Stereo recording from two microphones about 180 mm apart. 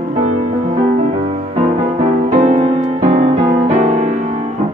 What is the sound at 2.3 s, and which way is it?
Music, 40° right (ahead or behind).